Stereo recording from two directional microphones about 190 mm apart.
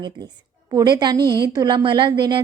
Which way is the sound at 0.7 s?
20° right (ahead or behind).